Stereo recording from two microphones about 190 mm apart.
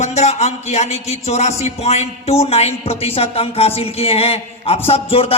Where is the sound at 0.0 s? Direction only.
35° left (ahead or behind).